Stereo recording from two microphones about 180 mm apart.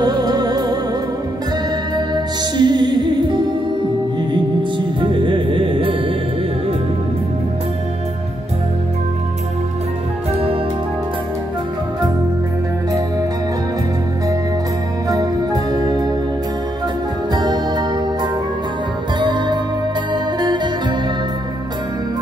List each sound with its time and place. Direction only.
0.0 s music: 20° right (ahead or behind)
2.0 s music: 25° right (ahead or behind)
15.0 s music: 20° right (ahead or behind)
17.3 s music: 20° right (ahead or behind)